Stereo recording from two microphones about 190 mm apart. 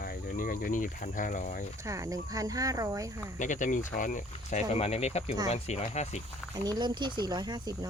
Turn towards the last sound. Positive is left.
turn(degrees=-20)  # may be behind; listen again after turning